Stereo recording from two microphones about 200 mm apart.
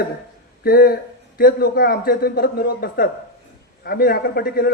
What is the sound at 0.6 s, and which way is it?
Speech, 50° left (ahead or behind).